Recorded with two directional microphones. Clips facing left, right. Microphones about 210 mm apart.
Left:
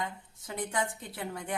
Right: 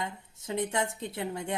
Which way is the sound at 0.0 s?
25° right (ahead or behind).